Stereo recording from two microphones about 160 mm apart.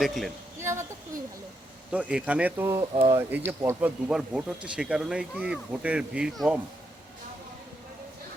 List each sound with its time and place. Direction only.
0.0 s speech: centre (ahead or behind)
0.6 s speech: 15° right (ahead or behind)